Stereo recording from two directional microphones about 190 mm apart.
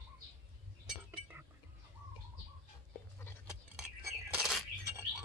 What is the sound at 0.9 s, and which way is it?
Chink, 10° right (ahead or behind).